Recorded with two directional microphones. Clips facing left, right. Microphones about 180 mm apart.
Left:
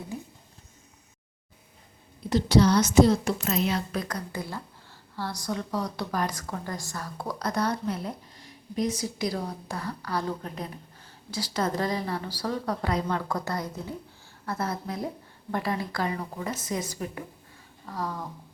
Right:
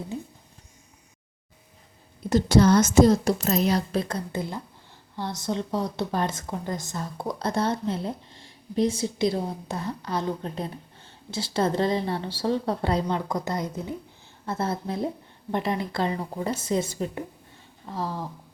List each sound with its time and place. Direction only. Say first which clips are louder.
2.3 s a woman's voice: right 3 dB; 50° right (ahead or behind); by 18.3 s 30° right (ahead or behind)